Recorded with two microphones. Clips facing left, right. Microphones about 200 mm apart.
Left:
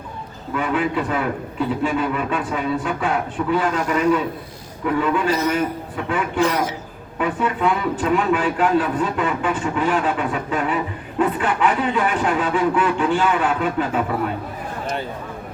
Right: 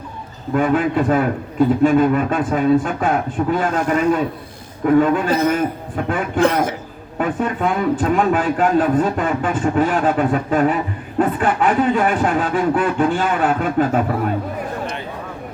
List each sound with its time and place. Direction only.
0.5 s a man's voice: 45° right (ahead or behind)
7.2 s a man's voice: 45° right (ahead or behind)